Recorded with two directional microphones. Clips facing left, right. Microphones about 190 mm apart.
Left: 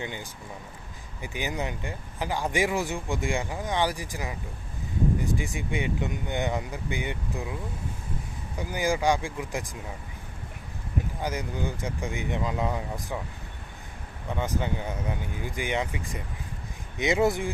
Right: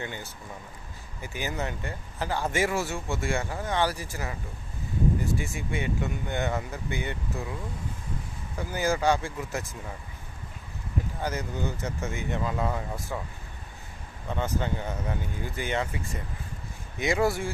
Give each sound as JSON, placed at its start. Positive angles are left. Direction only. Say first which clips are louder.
{"t": 0.0, "sound": "speech", "louder": "left 1 dB", "side_deg": 15}
{"t": 8.5, "sound": "speech", "louder": "even", "side_deg": 15}
{"t": 11.2, "sound": "speech", "louder": "right 1 dB", "side_deg": 15}
{"t": 14.3, "sound": "speech", "louder": "even", "side_deg": 15}